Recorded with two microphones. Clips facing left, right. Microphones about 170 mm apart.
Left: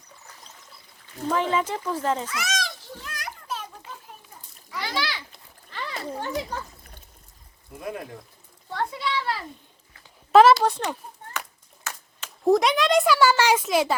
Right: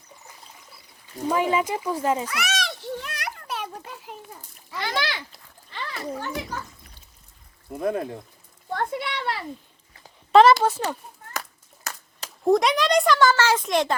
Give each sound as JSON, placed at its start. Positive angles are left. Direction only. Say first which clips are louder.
{"t": 1.3, "sound": "speech", "louder": "right 2 dB", "side_deg": -10}
{"t": 2.3, "sound": "children playing", "louder": "right 2 dB", "side_deg": -65}
{"t": 4.8, "sound": "a sound", "louder": "right 2 dB", "side_deg": -55}
{"t": 6.1, "sound": "a child's voice", "louder": "left 2 dB", "side_deg": 25}
{"t": 7.8, "sound": "speech", "louder": "right 8 dB", "side_deg": -35}
{"t": 8.7, "sound": "a child's voice", "louder": "even", "side_deg": -55}
{"t": 10.3, "sound": "a child's voice", "louder": "even", "side_deg": 0}
{"t": 11.3, "sound": "clapping", "louder": "right 2 dB", "side_deg": -40}
{"t": 12.5, "sound": "a child's voice", "louder": "even", "side_deg": 0}